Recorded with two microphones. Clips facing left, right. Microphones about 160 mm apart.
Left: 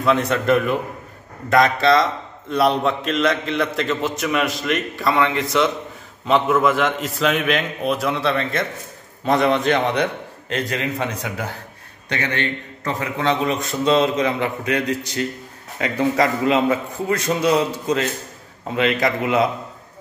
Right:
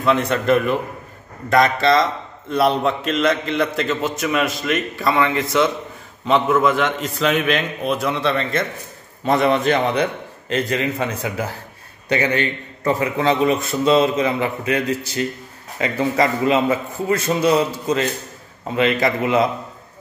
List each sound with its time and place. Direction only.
0.0 s a man's voice: centre (ahead or behind)